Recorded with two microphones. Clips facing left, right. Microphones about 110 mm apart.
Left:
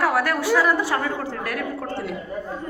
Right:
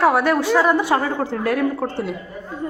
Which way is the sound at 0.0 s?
25° right (ahead or behind).